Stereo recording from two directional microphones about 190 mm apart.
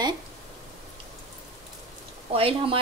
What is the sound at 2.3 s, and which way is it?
Speech, 30° right (ahead or behind).